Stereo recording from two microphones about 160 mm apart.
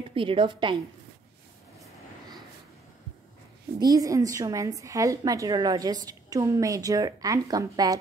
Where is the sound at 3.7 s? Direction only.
25° right (ahead or behind).